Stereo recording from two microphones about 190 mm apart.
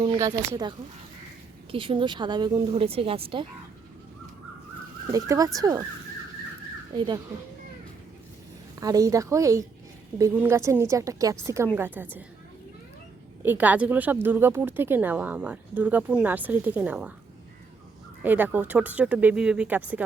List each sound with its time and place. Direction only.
0.0 s speech: 20° right (ahead or behind)
5.1 s speech: 20° right (ahead or behind)
6.9 s speech: 25° right (ahead or behind)
8.8 s speech: 20° right (ahead or behind)
13.4 s speech: 10° right (ahead or behind)
18.2 s speech: 10° right (ahead or behind)